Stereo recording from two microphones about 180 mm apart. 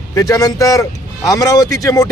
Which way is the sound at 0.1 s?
20° left (ahead or behind).